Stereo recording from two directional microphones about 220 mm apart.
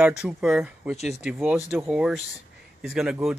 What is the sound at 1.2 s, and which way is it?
Speech, 5° right (ahead or behind).